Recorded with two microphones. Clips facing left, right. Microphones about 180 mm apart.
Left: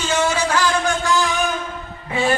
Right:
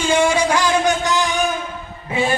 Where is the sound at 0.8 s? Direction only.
20° right (ahead or behind).